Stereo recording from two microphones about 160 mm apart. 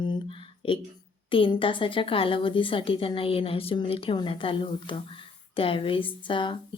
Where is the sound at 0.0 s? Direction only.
30° left (ahead or behind).